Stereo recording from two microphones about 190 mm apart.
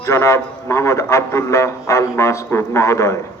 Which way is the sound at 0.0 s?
15° left (ahead or behind).